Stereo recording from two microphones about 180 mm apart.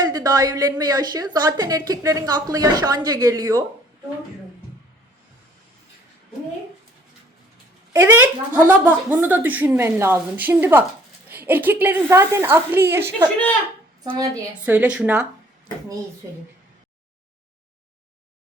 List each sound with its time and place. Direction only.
0.0 s a woman's voice: 20° right (ahead or behind)
7.9 s a woman's voice: 15° right (ahead or behind)
14.5 s a woman's voice: 10° right (ahead or behind)